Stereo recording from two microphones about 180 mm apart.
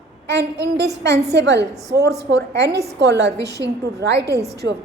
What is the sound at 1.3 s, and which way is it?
A woman's voice, 70° right (ahead or behind).